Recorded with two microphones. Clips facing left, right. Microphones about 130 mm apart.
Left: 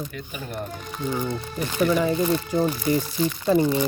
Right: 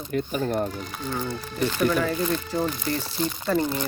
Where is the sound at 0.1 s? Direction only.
40° right (ahead or behind).